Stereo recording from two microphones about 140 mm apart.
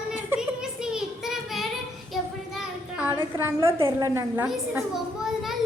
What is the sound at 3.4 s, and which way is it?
A woman's voice, 20° right (ahead or behind).